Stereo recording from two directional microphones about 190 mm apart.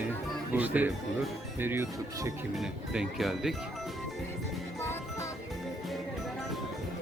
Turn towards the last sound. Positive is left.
turn(degrees=15)  # may be behind; listen again after turning